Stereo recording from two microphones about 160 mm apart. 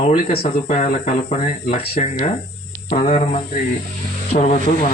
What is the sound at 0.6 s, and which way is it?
Speech, 45° left (ahead or behind).